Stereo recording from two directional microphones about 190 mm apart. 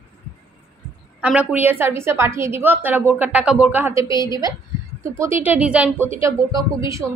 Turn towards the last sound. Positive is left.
turn(degrees=-15)  # may be behind; listen again after turning